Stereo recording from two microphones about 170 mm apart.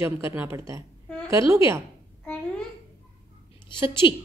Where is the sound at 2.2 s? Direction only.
5° left (ahead or behind).